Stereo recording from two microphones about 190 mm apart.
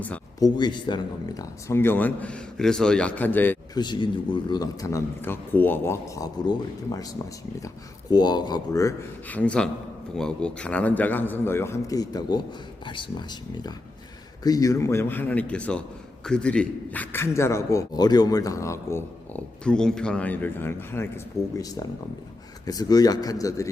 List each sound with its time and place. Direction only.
0.3 s a man's voice: 20° left (ahead or behind)
3.8 s a man's voice: 25° left (ahead or behind)
8.1 s a man's voice: 20° left (ahead or behind)
22.6 s a man's voice: 20° left (ahead or behind)